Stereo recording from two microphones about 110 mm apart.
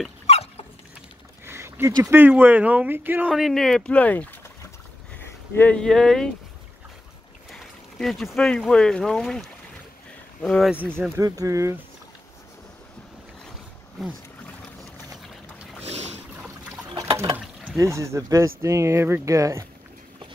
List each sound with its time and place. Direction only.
0.3 s a sound: 70° left (ahead or behind)
1.4 s a sound: 25° right (ahead or behind)
2.1 s speech: 15° right (ahead or behind)
3.3 s speech: centre (ahead or behind)
5.2 s a sound: 20° left (ahead or behind)
5.8 s speech: 5° left (ahead or behind)
7.5 s speech: centre (ahead or behind)
11.0 s speech: 30° right (ahead or behind)
15.8 s boat: 75° right (ahead or behind)
17.7 s speech: 25° right (ahead or behind)